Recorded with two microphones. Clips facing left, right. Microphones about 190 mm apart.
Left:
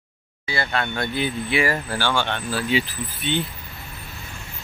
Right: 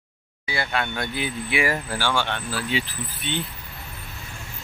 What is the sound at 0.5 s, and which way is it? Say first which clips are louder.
Speech: left 1 dB; 10° right (ahead or behind).